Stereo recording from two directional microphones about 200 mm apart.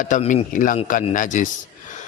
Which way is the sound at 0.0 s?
40° left (ahead or behind).